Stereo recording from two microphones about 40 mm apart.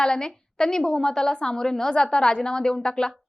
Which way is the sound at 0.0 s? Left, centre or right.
Centre.